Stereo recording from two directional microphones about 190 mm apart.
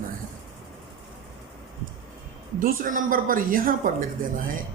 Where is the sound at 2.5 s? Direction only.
45° right (ahead or behind).